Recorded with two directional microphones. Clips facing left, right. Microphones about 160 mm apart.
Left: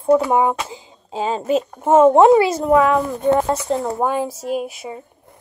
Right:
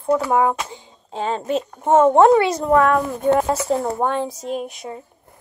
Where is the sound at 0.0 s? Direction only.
10° left (ahead or behind).